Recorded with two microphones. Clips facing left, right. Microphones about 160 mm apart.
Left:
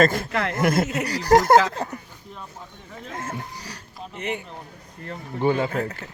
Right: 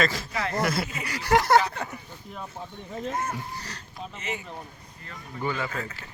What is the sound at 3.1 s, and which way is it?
Speech, 90° left.